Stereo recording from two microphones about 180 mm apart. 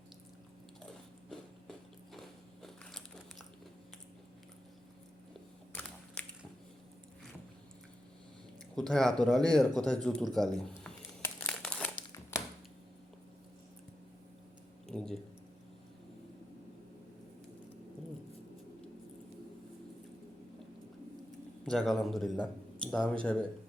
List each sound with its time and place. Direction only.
2.1 s biting: centre (ahead or behind)
6.2 s squish: 5° left (ahead or behind)
8.7 s speech: 5° left (ahead or behind)
11.2 s crumpling: 5° left (ahead or behind)
14.8 s a sound: 5° left (ahead or behind)
21.6 s a sound: centre (ahead or behind)
23.2 s speech: 5° left (ahead or behind)